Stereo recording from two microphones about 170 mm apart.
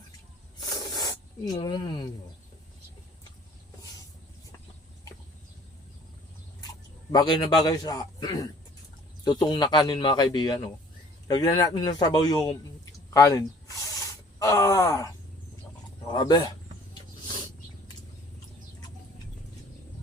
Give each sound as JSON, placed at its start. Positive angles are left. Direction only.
{"t": 1.5, "sound": "speech", "side_deg": 25}
{"t": 7.1, "sound": "a man's voice", "side_deg": 25}